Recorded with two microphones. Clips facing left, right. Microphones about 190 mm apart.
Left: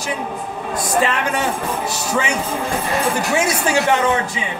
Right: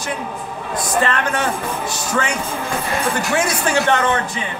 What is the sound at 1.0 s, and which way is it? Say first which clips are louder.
Speech: even; 5° left (ahead or behind).